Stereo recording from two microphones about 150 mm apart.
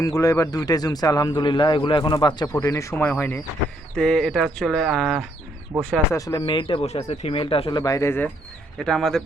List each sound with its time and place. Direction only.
0.0 s a man's voice: 20° left (ahead or behind); by 5.2 s 5° left (ahead or behind)
6.1 s a man's voice: 20° left (ahead or behind)
6.4 s speech: 35° left (ahead or behind)
7.8 s a man's voice: 20° left (ahead or behind)
8.8 s speech: 5° left (ahead or behind)